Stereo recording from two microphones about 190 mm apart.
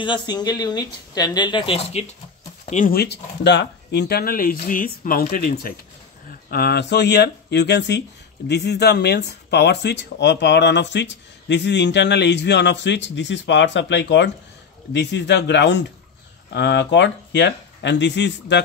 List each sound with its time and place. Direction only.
0.0 s speech: 25° left (ahead or behind)
2.6 s speech: 45° left (ahead or behind); by 18.6 s 65° left (ahead or behind)